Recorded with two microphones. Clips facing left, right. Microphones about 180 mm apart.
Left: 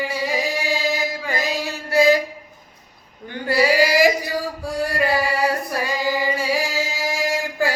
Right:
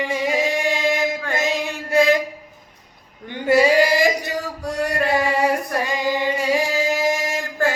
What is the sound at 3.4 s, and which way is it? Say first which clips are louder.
Male singing: right 3 dB; 20° right (ahead or behind).